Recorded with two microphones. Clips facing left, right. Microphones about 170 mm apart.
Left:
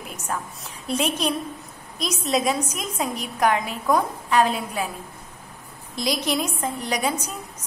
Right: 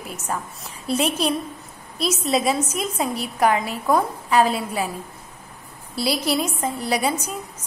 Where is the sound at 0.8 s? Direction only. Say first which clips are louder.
Right 2 dB; 35° right (ahead or behind).